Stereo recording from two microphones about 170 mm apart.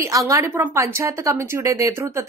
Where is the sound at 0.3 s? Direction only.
15° right (ahead or behind).